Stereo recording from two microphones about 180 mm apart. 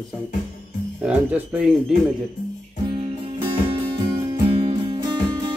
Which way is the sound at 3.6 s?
25° right (ahead or behind).